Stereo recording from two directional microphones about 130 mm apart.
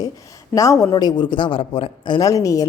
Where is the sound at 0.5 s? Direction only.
25° left (ahead or behind).